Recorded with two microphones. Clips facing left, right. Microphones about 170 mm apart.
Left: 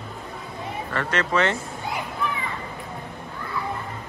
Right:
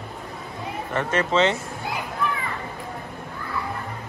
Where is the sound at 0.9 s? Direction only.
20° right (ahead or behind).